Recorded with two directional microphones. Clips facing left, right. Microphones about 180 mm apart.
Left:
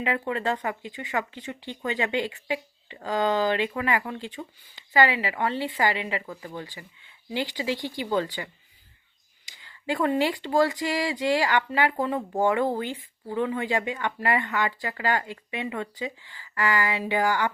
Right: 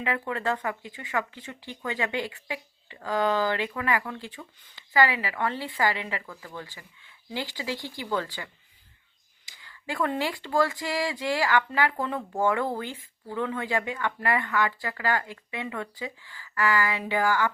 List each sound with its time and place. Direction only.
0.0 s speech: 20° left (ahead or behind)
9.5 s speech: 20° left (ahead or behind)